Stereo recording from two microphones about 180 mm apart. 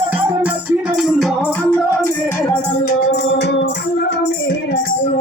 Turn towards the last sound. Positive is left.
turn(degrees=75)  # may be behind; listen again after turning